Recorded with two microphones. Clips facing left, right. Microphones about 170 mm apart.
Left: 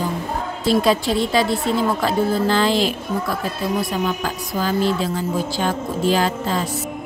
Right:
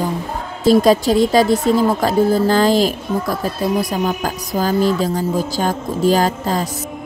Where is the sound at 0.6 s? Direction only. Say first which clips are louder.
Right 6 dB; 40° right (ahead or behind).